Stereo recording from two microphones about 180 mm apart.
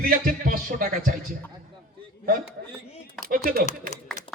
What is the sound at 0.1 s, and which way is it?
A man's voice, 50° right (ahead or behind).